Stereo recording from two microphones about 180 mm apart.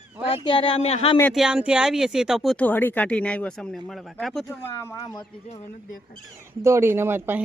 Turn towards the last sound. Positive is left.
turn(degrees=-10)  # may be behind; listen again after turning